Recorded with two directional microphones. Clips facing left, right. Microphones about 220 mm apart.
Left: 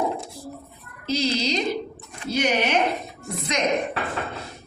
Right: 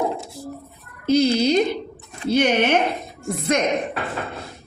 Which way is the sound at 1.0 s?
55° right (ahead or behind).